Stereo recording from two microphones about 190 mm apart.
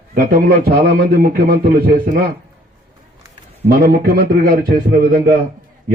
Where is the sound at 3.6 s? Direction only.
55° right (ahead or behind).